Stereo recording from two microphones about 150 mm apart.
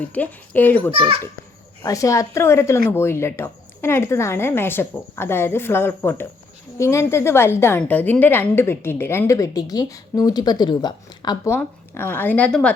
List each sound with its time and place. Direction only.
0.0 s a woman's voice: 10° left (ahead or behind)
0.9 s a child's voice: 35° right (ahead or behind)
1.8 s a woman's voice: 20° left (ahead or behind)
11.5 s a woman's voice: 15° left (ahead or behind)